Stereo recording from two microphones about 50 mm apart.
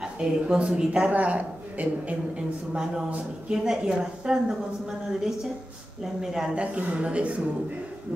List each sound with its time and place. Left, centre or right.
0.0 s a man's voice: centre
1.1 s a man's voice: right; by 5.5 s centre
6.5 s a man's voice: right